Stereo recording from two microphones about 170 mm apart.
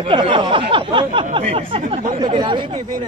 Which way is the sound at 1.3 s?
35° right (ahead or behind).